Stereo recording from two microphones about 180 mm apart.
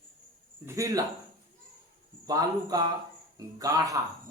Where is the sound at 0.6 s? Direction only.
20° right (ahead or behind).